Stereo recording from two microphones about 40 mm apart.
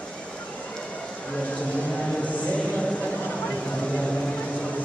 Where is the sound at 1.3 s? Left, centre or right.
Left.